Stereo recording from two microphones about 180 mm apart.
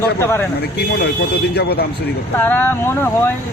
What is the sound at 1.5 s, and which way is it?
Speech, 65° left (ahead or behind).